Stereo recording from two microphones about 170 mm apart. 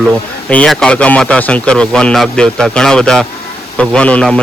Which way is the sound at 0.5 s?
5° left (ahead or behind).